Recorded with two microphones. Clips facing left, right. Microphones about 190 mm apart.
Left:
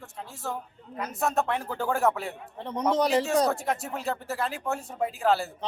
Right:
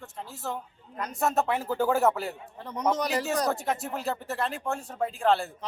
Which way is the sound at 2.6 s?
30° left (ahead or behind).